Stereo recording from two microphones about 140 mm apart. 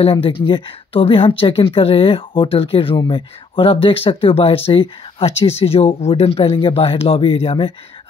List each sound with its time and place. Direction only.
0.0 s a woman's voice: 40° left (ahead or behind)